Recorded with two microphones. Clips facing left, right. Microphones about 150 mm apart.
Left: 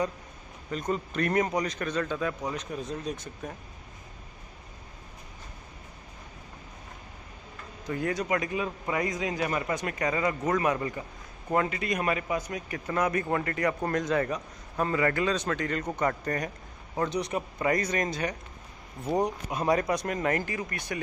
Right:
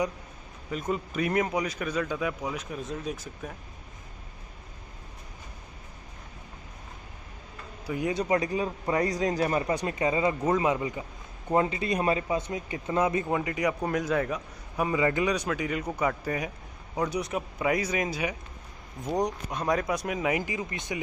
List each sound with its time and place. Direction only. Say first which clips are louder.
0.7 s a man's voice: even; 5° right (ahead or behind)
7.8 s speech: right 1 dB; 10° right (ahead or behind)
8.1 s a man's voice: right 4 dB; 30° right (ahead or behind)
13.2 s a man's voice: even; 10° right (ahead or behind)
19.0 s a man's voice: left 1 dB; 10° left (ahead or behind); by 21.0 s 20° right (ahead or behind)